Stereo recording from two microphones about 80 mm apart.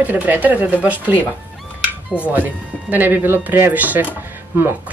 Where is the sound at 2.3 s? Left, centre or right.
Right.